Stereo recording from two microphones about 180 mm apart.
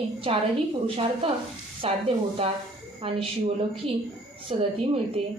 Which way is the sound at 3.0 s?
30° right (ahead or behind).